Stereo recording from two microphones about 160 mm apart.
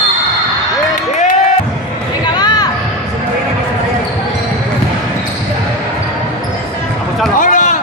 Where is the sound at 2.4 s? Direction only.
25° left (ahead or behind).